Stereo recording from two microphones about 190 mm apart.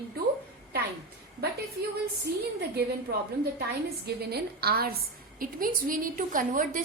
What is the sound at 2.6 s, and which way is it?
A woman's voice, 55° right (ahead or behind).